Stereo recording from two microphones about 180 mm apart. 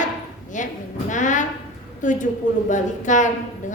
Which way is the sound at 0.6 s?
45° left (ahead or behind).